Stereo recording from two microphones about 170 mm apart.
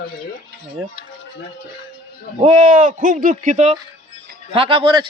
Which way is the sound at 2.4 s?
40° right (ahead or behind).